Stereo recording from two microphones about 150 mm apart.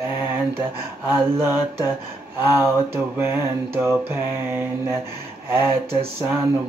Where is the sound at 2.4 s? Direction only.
15° right (ahead or behind).